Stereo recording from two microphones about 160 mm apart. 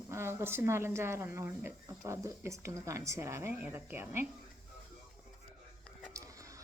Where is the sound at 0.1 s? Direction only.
15° right (ahead or behind).